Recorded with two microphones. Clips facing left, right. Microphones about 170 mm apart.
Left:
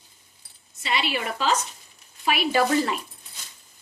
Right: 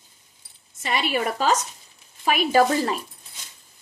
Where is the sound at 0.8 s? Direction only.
45° right (ahead or behind).